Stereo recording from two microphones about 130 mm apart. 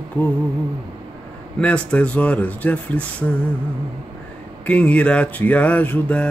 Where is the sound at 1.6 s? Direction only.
10° left (ahead or behind).